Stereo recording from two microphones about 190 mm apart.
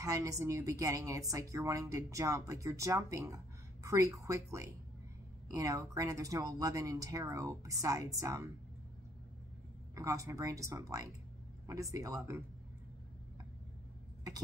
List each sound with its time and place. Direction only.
0.0 s speech: 15° right (ahead or behind)
9.9 s speech: 15° right (ahead or behind)